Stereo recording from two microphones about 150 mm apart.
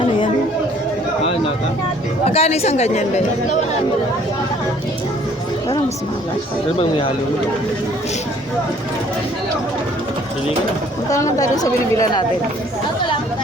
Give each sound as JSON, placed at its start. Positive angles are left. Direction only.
{"t": 2.2, "sound": "speech", "side_deg": 40}
{"t": 6.7, "sound": "speech", "side_deg": 35}
{"t": 11.1, "sound": "speech", "side_deg": 20}